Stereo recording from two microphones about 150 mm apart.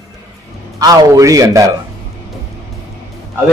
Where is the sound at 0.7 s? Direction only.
25° right (ahead or behind).